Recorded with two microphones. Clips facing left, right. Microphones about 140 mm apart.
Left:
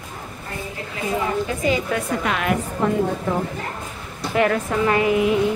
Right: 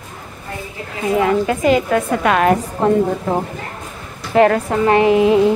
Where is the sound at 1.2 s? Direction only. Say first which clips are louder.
Right 9 dB; 70° right (ahead or behind).